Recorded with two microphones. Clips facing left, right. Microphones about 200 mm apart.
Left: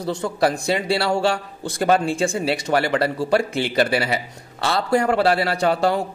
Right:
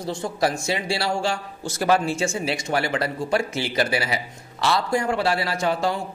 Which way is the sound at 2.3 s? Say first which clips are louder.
Left 4 dB; 55° left (ahead or behind).